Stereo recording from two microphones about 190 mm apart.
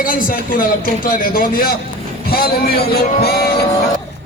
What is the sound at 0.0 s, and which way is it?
A man's voice, 45° left (ahead or behind).